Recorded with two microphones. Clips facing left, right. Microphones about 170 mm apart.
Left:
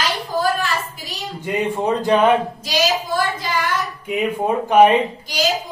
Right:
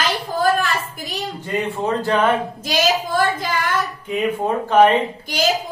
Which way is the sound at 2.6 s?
50° right (ahead or behind).